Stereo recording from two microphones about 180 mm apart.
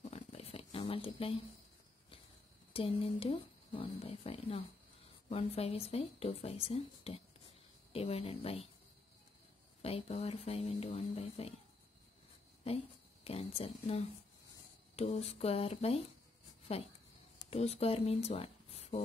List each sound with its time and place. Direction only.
0.1 s a sound: 35° left (ahead or behind)
2.7 s speech: 30° left (ahead or behind)
9.8 s speech: 35° left (ahead or behind)
12.6 s a woman's voice: 35° left (ahead or behind)
17.5 s speech: 35° left (ahead or behind)